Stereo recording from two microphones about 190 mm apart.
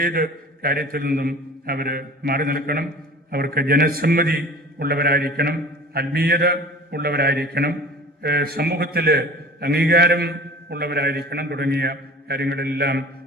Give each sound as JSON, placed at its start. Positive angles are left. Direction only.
{"t": 0.0, "sound": "a man's voice", "side_deg": -50}